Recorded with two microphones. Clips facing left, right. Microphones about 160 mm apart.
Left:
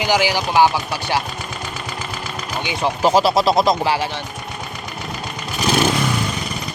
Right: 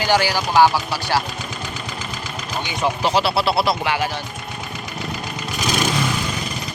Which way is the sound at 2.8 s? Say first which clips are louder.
Left 4 dB; 40° left (ahead or behind).